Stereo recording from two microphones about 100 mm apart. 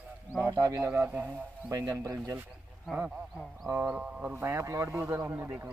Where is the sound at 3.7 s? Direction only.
20° right (ahead or behind).